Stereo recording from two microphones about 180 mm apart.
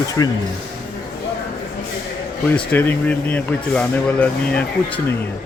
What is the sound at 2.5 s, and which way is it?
Speech, 10° left (ahead or behind).